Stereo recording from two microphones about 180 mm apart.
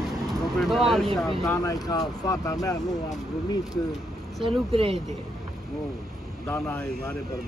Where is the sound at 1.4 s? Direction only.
20° left (ahead or behind).